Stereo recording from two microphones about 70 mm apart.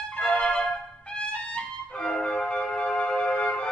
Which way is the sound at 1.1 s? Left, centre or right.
Centre.